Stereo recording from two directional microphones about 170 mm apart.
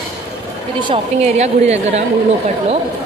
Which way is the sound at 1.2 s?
40° right (ahead or behind).